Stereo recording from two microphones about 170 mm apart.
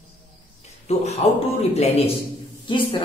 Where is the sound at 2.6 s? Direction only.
30° left (ahead or behind).